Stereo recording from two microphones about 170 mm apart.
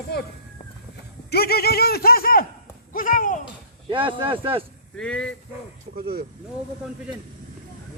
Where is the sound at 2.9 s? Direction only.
50° left (ahead or behind).